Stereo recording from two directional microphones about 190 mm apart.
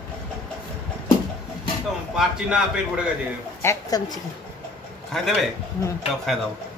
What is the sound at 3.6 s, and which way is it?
Speech, 15° left (ahead or behind).